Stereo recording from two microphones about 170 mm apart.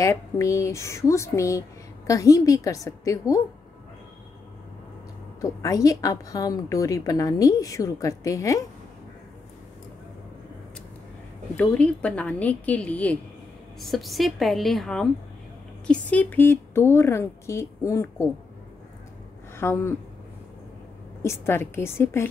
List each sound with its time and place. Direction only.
0.0 s a woman's voice: 20° left (ahead or behind)
5.4 s a woman's voice: 20° left (ahead or behind)
11.5 s a woman's voice: 5° left (ahead or behind)
19.5 s speech: 15° left (ahead or behind)
21.2 s speech: 15° left (ahead or behind)